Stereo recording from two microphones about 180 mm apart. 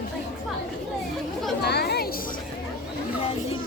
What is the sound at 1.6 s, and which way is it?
Chatter, 65° left (ahead or behind).